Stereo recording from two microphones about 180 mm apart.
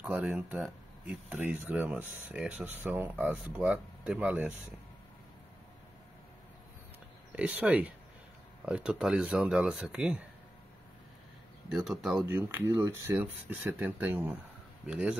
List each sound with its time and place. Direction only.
0.0 s speech: 10° right (ahead or behind)
7.3 s speech: 5° right (ahead or behind)
11.7 s speech: centre (ahead or behind)